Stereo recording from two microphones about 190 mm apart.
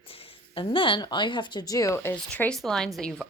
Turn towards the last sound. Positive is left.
turn(degrees=0)  # may be behind; listen again after turning